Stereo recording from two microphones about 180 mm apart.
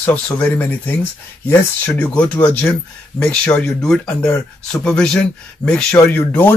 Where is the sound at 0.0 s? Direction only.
5° left (ahead or behind).